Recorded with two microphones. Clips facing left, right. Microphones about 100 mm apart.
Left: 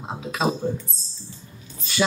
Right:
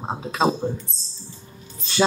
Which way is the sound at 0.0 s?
35° right (ahead or behind).